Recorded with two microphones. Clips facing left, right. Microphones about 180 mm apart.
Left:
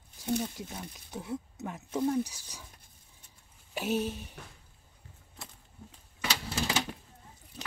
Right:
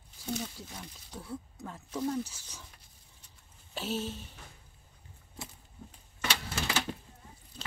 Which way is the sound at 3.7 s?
15° left (ahead or behind).